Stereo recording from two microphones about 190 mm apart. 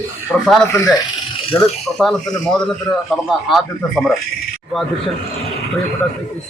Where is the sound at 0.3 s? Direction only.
10° left (ahead or behind).